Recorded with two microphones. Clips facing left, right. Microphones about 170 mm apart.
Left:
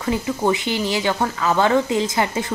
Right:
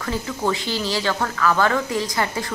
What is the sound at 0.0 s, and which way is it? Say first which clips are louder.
Speech: left 4 dB; 20° left (ahead or behind).